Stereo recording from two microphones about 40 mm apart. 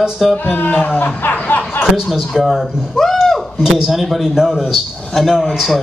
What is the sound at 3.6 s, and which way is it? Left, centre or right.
Speech, centre.